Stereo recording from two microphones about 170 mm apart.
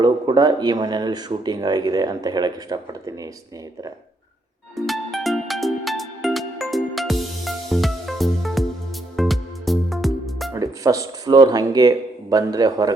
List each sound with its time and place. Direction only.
0.0 s speech: 25° right (ahead or behind)
4.7 s music: centre (ahead or behind)
10.5 s speech: 20° right (ahead or behind)